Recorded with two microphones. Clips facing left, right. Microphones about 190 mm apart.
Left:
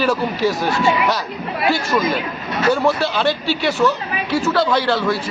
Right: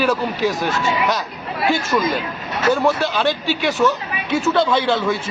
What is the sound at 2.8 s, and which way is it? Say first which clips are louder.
A man's voice: left 1 dB; 15° right (ahead or behind).